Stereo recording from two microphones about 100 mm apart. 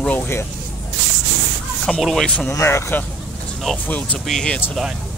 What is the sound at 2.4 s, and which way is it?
Speech, 25° left (ahead or behind).